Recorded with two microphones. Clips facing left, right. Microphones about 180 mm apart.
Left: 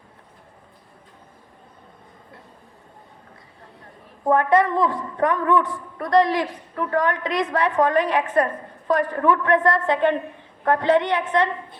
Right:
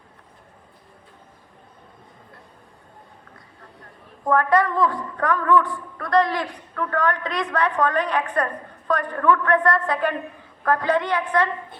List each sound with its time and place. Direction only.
4.3 s a woman's voice: 25° left (ahead or behind)